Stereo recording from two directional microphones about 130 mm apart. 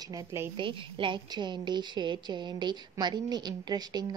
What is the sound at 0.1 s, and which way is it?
Speech, 25° right (ahead or behind).